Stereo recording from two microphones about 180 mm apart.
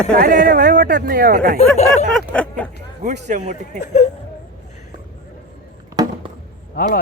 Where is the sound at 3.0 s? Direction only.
45° right (ahead or behind).